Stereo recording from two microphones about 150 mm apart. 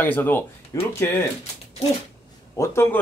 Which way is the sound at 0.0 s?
10° left (ahead or behind).